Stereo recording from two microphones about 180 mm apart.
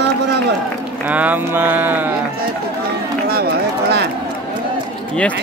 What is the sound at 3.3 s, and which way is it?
Run, 65° right (ahead or behind).